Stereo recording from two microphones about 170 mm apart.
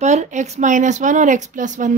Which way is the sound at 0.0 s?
40° right (ahead or behind).